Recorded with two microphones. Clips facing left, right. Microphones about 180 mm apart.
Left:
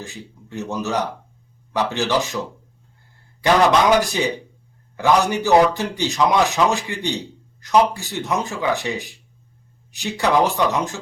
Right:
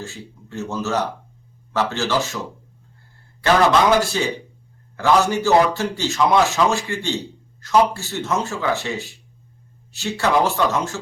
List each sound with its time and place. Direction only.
0.0 s a man's voice: 15° left (ahead or behind)
3.4 s a man's voice: 15° left (ahead or behind)